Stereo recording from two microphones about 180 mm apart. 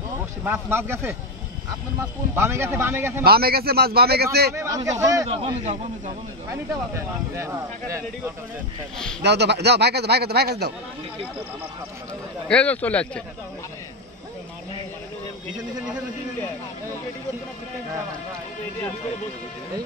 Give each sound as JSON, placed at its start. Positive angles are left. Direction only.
{"t": 0.4, "sound": "speech", "side_deg": -15}
{"t": 2.3, "sound": "speech", "side_deg": -15}
{"t": 3.3, "sound": "speech", "side_deg": -60}
{"t": 4.6, "sound": "speech", "side_deg": -20}
{"t": 5.3, "sound": "speech", "side_deg": -35}
{"t": 6.5, "sound": "speech", "side_deg": -15}
{"t": 9.2, "sound": "speech", "side_deg": -70}
{"t": 12.4, "sound": "a man's voice", "side_deg": 5}